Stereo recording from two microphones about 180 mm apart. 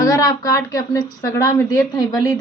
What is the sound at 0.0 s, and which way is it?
A woman's voice, 20° left (ahead or behind).